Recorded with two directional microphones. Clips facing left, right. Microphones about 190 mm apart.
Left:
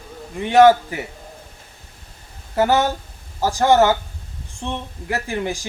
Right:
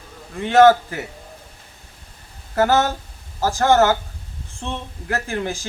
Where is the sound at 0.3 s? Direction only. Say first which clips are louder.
Even; 15° left (ahead or behind).